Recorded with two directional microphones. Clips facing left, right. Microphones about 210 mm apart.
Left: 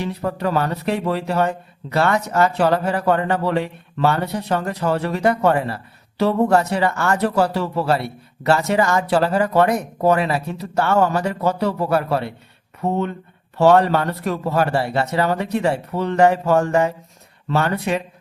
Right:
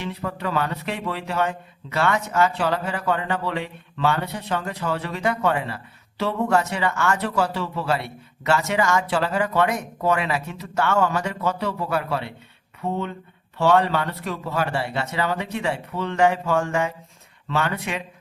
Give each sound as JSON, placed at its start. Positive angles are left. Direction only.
{"t": 0.0, "sound": "speech", "side_deg": 40}